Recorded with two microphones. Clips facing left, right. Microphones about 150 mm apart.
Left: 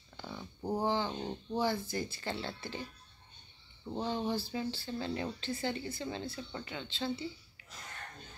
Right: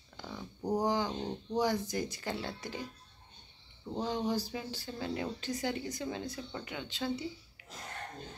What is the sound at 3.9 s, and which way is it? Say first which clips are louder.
Speech: right 1 dB; 15° right (ahead or behind).